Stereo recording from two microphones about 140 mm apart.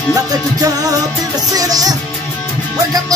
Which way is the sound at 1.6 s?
25° right (ahead or behind).